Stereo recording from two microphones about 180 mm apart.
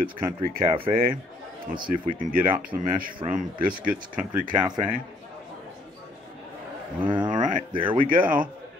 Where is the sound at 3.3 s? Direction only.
50° right (ahead or behind).